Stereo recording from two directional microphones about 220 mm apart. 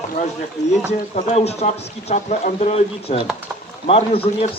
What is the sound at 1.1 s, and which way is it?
Speech, 30° left (ahead or behind).